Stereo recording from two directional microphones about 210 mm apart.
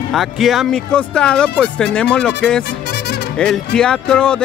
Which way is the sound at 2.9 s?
50° left (ahead or behind).